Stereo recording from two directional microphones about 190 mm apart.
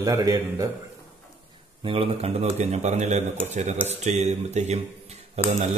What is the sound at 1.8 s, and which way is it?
Speech, 30° right (ahead or behind).